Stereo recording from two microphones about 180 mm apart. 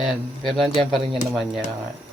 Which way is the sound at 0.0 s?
Centre (ahead or behind).